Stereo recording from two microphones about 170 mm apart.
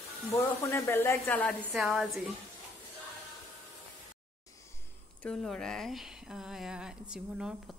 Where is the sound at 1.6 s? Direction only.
Centre (ahead or behind).